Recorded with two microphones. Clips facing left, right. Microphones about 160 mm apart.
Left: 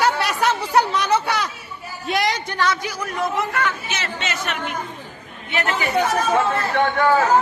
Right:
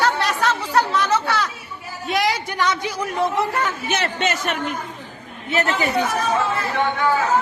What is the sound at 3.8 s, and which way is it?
Speech, 55° right (ahead or behind).